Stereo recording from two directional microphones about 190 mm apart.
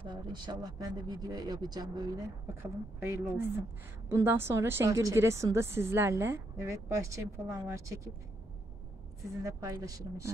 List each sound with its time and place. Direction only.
0.0 s a woman's voice: 25° right (ahead or behind)
9.4 s a woman's voice: 15° right (ahead or behind)